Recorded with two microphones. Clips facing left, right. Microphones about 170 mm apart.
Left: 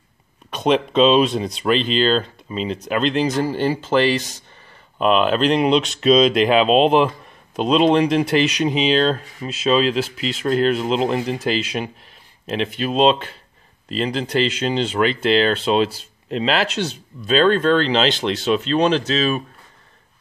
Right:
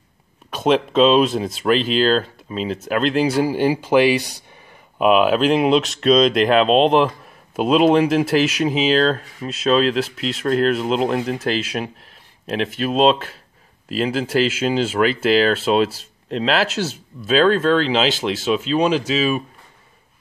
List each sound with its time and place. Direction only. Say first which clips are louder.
0.5 s speech: right 1 dB; centre (ahead or behind)